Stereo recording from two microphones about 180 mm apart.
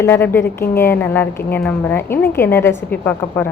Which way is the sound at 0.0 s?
10° left (ahead or behind).